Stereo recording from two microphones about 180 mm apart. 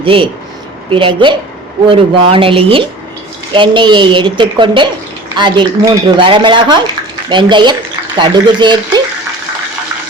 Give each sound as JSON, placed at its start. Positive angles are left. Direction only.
{"t": 0.0, "sound": "speech", "side_deg": -30}